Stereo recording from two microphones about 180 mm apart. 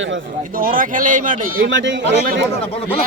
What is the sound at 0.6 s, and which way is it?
Speech, 50° right (ahead or behind).